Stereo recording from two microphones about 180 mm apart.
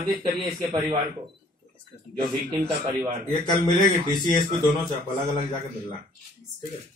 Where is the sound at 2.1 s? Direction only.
30° right (ahead or behind).